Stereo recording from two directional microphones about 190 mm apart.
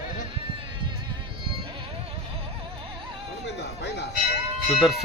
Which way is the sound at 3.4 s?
60° left (ahead or behind).